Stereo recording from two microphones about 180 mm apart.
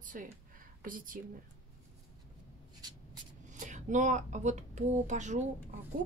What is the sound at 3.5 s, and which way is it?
A woman's voice, 45° right (ahead or behind).